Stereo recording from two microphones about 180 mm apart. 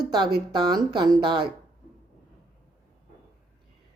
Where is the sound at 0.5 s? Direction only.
20° right (ahead or behind).